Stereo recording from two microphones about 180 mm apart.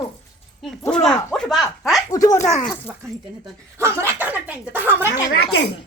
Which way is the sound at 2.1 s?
20° left (ahead or behind).